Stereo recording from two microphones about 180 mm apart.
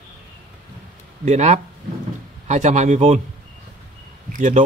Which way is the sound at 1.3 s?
40° right (ahead or behind).